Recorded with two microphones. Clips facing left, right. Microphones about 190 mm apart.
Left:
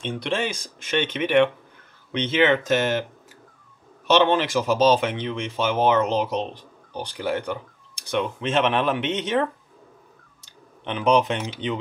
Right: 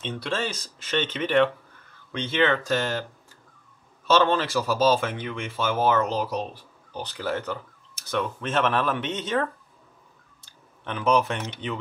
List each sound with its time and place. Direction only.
0.0 s speech: 15° left (ahead or behind)
4.1 s speech: 15° left (ahead or behind)